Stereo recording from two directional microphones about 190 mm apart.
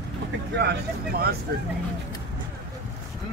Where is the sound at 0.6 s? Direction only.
55° right (ahead or behind).